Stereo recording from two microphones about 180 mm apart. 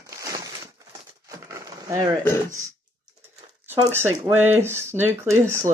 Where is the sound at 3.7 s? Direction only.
15° right (ahead or behind).